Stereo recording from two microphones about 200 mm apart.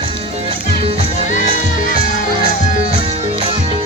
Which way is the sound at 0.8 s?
30° right (ahead or behind).